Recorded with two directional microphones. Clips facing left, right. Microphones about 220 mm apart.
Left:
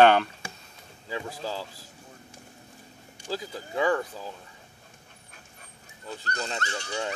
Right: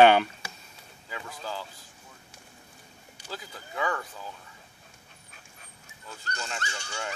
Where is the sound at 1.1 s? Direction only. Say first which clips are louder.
Left 5 dB; 30° left (ahead or behind).